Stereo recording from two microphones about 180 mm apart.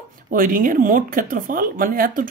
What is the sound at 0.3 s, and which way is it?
A woman's voice, 50° right (ahead or behind).